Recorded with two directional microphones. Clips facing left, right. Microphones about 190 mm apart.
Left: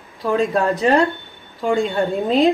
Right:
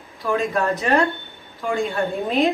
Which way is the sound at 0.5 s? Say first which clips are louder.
Left 3 dB; 30° left (ahead or behind).